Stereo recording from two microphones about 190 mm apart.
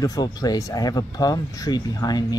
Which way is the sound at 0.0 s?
20° left (ahead or behind).